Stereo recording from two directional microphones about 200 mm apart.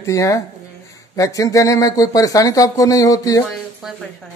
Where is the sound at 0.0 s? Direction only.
15° left (ahead or behind).